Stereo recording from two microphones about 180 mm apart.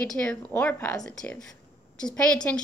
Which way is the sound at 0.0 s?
5° left (ahead or behind).